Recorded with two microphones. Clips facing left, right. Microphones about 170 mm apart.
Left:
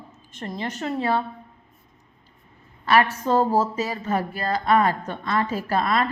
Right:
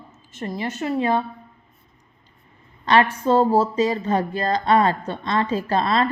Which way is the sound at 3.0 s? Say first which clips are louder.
Right 3 dB; 15° right (ahead or behind).